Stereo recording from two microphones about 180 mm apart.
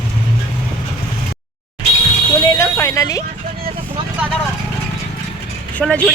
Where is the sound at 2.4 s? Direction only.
20° left (ahead or behind).